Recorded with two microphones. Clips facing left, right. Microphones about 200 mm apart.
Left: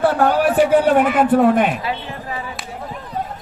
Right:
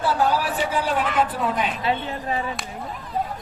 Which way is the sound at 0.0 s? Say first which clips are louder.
Left 6 dB; 55° left (ahead or behind).